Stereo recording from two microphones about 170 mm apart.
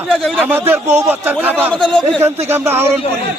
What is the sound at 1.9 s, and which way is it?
Speech, 25° right (ahead or behind).